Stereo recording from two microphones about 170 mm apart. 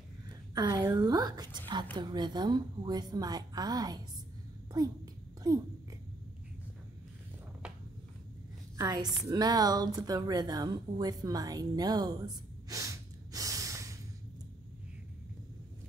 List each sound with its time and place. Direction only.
0.6 s a woman's voice: 25° right (ahead or behind)
8.7 s a woman's voice: 20° right (ahead or behind)
12.6 s snort: 20° right (ahead or behind)